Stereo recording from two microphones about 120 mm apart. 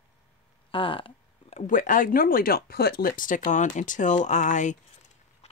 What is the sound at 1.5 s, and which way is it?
Speech, 90° left.